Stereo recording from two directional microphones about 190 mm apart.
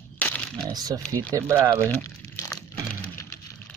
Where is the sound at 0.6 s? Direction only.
20° right (ahead or behind).